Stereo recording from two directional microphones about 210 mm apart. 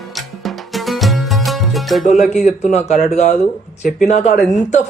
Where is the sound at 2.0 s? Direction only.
35° left (ahead or behind).